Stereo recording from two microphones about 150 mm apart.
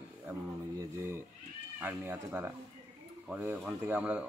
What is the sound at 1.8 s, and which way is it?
Speech, 15° right (ahead or behind).